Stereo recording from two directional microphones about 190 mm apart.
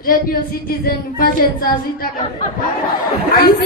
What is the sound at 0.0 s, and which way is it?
A woman's voice, 50° left (ahead or behind).